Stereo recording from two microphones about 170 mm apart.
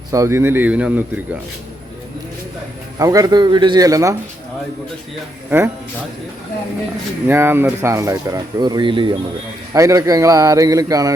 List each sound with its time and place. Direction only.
0.1 s speech: 15° right (ahead or behind)
3.0 s a man's voice: 20° right (ahead or behind)
5.5 s speech: 15° right (ahead or behind)
7.3 s speech: 15° right (ahead or behind); by 9.1 s 30° right (ahead or behind)
9.7 s a man's voice: 20° right (ahead or behind)